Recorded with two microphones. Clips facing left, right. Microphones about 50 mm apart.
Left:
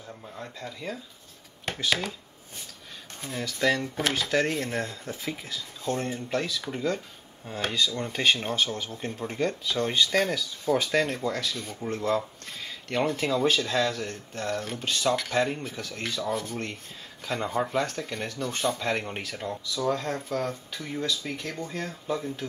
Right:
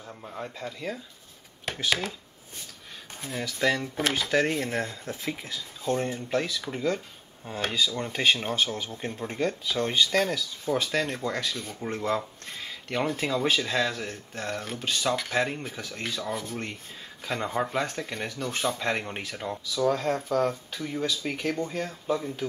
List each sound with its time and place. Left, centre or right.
0.2 s speech: centre
3.2 s speech: centre
11.8 s speech: centre
12.1 s speech: centre